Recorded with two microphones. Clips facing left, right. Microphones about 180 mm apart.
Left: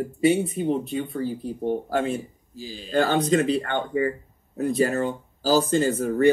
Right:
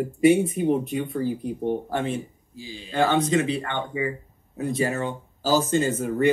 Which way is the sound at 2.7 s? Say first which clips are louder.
Even; 35° left (ahead or behind).